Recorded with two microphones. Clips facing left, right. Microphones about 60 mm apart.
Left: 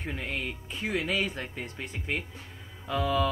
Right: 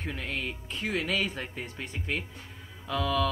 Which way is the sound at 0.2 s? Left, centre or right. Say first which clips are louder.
Even; centre.